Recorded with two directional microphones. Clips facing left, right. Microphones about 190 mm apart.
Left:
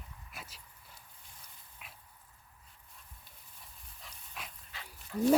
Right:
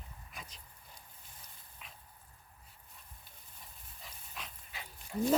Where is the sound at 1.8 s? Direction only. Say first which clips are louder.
Even; 5° left (ahead or behind).